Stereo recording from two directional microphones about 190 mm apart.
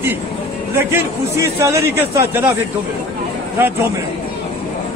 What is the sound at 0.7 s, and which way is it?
A man's voice, 15° right (ahead or behind).